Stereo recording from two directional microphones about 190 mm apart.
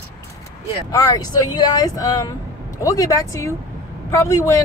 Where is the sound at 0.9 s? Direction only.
20° left (ahead or behind).